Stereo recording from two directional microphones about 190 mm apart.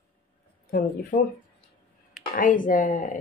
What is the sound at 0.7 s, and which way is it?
Speech, 50° left (ahead or behind).